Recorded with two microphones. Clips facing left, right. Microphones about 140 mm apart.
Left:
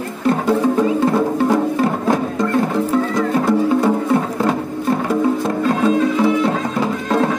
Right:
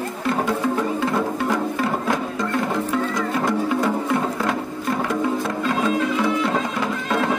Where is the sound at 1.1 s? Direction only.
30° left (ahead or behind).